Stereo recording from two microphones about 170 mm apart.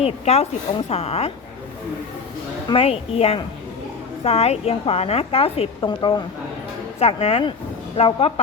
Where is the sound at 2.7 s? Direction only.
35° left (ahead or behind).